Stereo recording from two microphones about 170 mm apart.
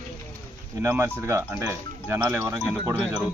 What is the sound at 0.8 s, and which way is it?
Speech, 15° right (ahead or behind).